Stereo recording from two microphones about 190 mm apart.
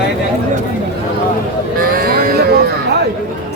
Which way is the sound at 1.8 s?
50° right (ahead or behind).